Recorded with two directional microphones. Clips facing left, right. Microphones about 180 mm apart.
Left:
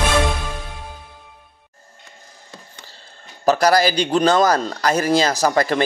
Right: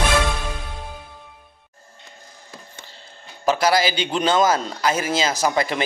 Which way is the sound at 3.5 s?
40° left (ahead or behind).